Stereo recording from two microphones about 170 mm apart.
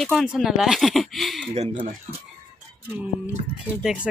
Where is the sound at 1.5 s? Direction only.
40° right (ahead or behind).